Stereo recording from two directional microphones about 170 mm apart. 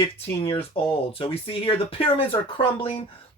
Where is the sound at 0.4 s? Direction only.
35° left (ahead or behind).